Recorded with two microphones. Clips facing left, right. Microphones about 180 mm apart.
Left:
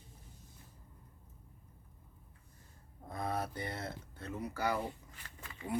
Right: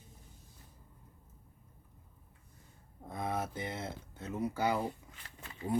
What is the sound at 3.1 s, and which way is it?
Speech, 20° right (ahead or behind).